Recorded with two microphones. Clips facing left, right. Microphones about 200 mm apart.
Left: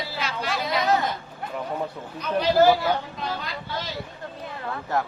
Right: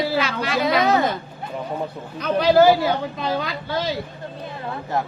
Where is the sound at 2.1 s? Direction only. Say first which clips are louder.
Right 4 dB; 90° right.